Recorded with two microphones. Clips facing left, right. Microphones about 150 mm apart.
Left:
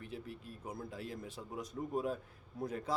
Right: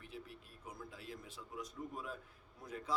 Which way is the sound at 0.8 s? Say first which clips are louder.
Left 5 dB; 40° left (ahead or behind).